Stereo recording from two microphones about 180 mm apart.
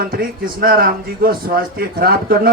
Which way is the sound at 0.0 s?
55° right (ahead or behind).